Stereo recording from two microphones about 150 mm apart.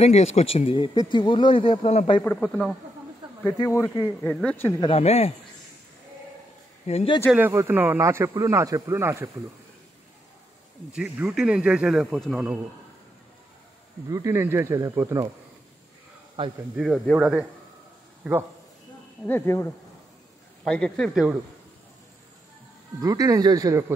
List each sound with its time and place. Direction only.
0.0 s speech: 45° left (ahead or behind)
2.2 s speech: 10° left (ahead or behind)
3.5 s speech: 20° left (ahead or behind)
4.2 s speech: 5° left (ahead or behind)
4.7 s speech: 40° left (ahead or behind)
6.9 s speech: 45° left (ahead or behind)
7.3 s speech: 15° right (ahead or behind)
10.9 s speech: 5° right (ahead or behind)
14.0 s speech: 20° right (ahead or behind)
16.7 s speech: centre (ahead or behind)
19.2 s speech: 15° left (ahead or behind)
20.6 s speech: 5° left (ahead or behind)
22.9 s speech: 25° right (ahead or behind)